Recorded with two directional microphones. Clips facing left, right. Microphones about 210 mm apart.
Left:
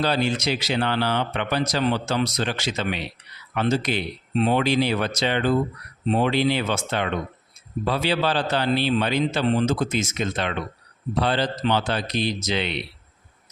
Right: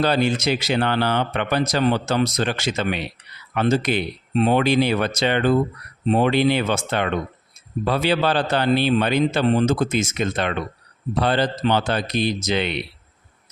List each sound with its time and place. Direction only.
0.0 s speech: 55° right (ahead or behind)